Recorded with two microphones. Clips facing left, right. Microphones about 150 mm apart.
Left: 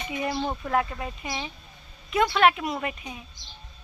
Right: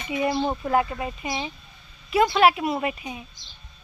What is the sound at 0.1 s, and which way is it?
A woman's voice, 5° right (ahead or behind).